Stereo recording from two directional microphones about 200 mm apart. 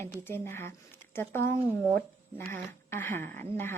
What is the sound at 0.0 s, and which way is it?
Speech, 10° left (ahead or behind).